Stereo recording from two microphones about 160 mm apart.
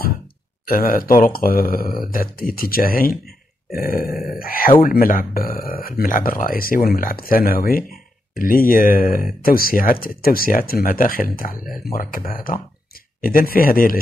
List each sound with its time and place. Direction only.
0.7 s speech: 60° left (ahead or behind)